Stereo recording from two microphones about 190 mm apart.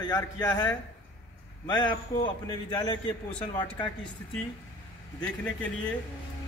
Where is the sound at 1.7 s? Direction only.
25° left (ahead or behind).